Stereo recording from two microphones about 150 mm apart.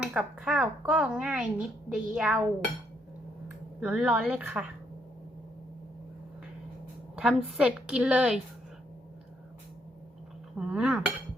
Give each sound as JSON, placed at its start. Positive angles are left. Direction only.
{"t": 0.0, "sound": "speech", "side_deg": -5}
{"t": 3.8, "sound": "a woman's voice", "side_deg": -5}
{"t": 7.2, "sound": "a woman's voice", "side_deg": -5}
{"t": 10.6, "sound": "a woman's voice", "side_deg": -5}